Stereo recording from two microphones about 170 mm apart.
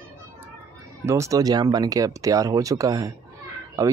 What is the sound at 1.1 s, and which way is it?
Speech, 20° right (ahead or behind).